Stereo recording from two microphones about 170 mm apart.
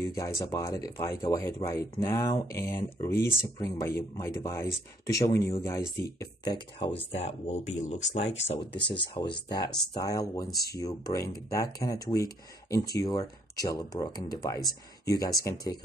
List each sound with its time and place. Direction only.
0.0 s speech: 20° left (ahead or behind)
7.0 s speech: 35° left (ahead or behind)